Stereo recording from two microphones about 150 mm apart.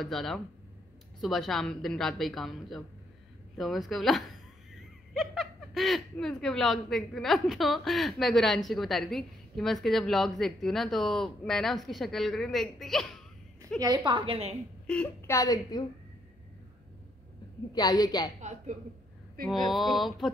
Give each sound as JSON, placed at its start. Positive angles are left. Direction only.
{"t": 0.0, "sound": "a woman's voice", "side_deg": 0}
{"t": 13.7, "sound": "a woman's voice", "side_deg": -25}
{"t": 14.9, "sound": "a woman's voice", "side_deg": 5}
{"t": 15.2, "sound": "a woman's voice", "side_deg": 20}
{"t": 17.7, "sound": "a woman's voice", "side_deg": 25}
{"t": 18.4, "sound": "a woman's voice", "side_deg": -50}
{"t": 19.4, "sound": "a woman's voice", "side_deg": 0}